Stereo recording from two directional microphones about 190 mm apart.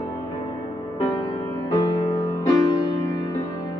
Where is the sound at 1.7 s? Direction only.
20° left (ahead or behind).